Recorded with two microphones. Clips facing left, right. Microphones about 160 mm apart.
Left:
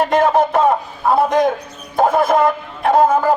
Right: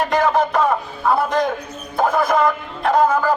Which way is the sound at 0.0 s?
25° left (ahead or behind).